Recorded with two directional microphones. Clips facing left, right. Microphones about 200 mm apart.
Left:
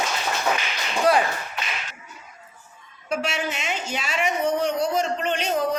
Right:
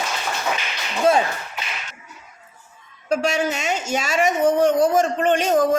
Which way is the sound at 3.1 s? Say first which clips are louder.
Right 6 dB; 40° right (ahead or behind).